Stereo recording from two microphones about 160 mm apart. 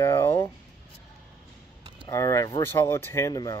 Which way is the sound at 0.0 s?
15° left (ahead or behind).